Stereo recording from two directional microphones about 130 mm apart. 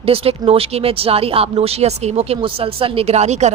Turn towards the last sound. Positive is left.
turn(degrees=-60)  # may be behind; listen again after turning